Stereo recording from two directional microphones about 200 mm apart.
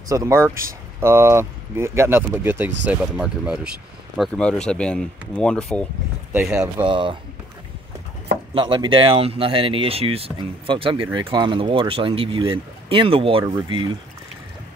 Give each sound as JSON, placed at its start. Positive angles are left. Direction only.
{"t": 0.1, "sound": "speech", "side_deg": -15}
{"t": 6.3, "sound": "speech", "side_deg": -15}
{"t": 8.5, "sound": "speech", "side_deg": -25}